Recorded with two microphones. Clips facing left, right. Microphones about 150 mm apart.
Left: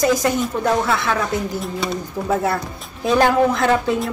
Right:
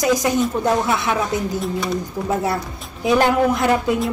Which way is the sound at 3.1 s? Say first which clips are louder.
Even; 15° right (ahead or behind).